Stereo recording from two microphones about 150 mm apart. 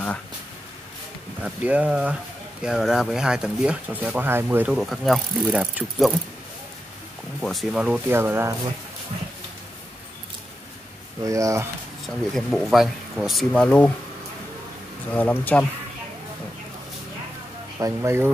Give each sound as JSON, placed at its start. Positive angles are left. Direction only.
{"t": 1.4, "sound": "speech", "side_deg": -10}
{"t": 7.3, "sound": "speech", "side_deg": 5}
{"t": 11.2, "sound": "speech", "side_deg": -20}
{"t": 12.4, "sound": "speech", "side_deg": 0}
{"t": 15.1, "sound": "speech", "side_deg": 10}
{"t": 17.7, "sound": "speech", "side_deg": -20}